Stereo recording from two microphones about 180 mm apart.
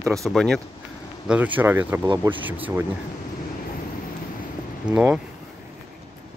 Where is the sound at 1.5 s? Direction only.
10° right (ahead or behind).